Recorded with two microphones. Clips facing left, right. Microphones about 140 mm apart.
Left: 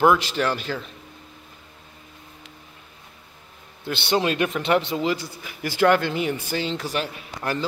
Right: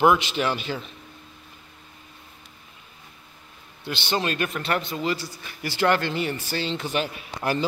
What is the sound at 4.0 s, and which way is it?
Speech, 10° left (ahead or behind).